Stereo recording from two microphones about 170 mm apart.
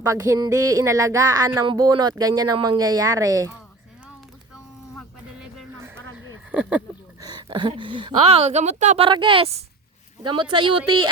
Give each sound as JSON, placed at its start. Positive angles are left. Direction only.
{"t": 0.0, "sound": "speech", "side_deg": -15}
{"t": 5.8, "sound": "a sound", "side_deg": -10}
{"t": 7.2, "sound": "speech", "side_deg": -25}
{"t": 9.0, "sound": "a woman's voice", "side_deg": -30}